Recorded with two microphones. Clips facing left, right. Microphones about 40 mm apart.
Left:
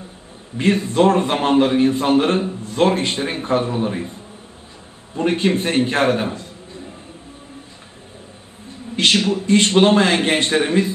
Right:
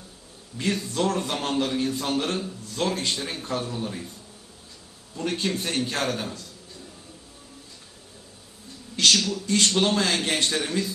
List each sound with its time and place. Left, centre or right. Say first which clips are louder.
0.6 s a man's voice: left 10 dB; left
8.6 s a man's voice: left 4 dB; left